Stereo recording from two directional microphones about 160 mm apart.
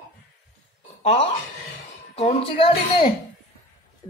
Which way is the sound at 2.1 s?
35° left (ahead or behind).